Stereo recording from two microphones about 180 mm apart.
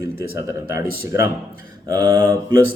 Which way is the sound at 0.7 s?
15° right (ahead or behind).